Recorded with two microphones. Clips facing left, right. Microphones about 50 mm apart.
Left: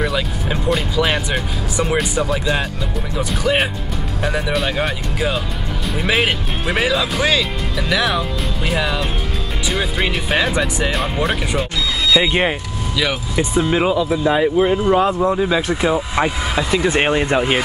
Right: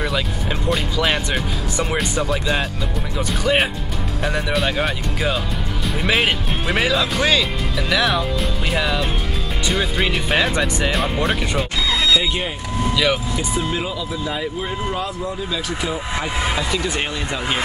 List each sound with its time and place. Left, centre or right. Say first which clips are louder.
0.0 s speech: left 2 dB; centre
12.2 s speech: left 6 dB; left
12.9 s speech: right 1 dB; centre
13.4 s speech: left 6 dB; left
16.3 s speech: even; right
16.5 s speech: left 5 dB; centre
16.9 s speech: left 8 dB; left